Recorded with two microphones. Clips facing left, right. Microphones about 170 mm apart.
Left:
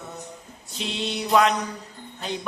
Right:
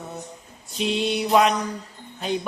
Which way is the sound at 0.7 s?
15° right (ahead or behind).